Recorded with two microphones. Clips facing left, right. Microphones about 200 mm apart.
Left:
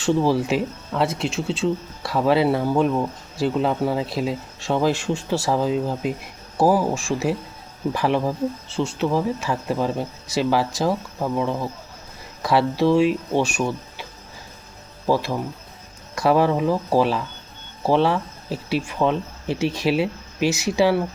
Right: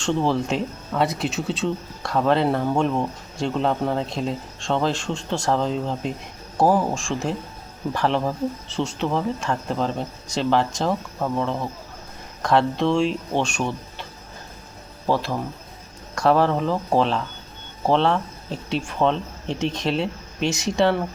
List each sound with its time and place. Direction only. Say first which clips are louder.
0.0 s speech: left 3 dB; 5° left (ahead or behind)
12.4 s speech: left 1 dB; 5° left (ahead or behind)